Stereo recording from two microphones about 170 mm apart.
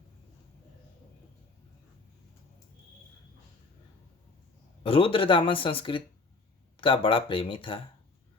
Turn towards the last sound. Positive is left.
turn(degrees=30)  # may be behind; listen again after turning